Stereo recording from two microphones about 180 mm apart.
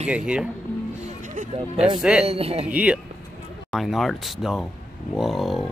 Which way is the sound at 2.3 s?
35° right (ahead or behind).